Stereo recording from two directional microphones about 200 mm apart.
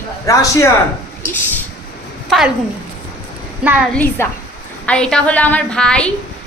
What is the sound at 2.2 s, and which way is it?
Speech, centre (ahead or behind).